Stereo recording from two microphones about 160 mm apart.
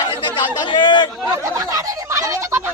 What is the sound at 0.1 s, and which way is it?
Chatter, 30° left (ahead or behind).